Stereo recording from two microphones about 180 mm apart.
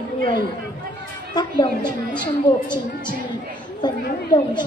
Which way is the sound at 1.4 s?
25° left (ahead or behind).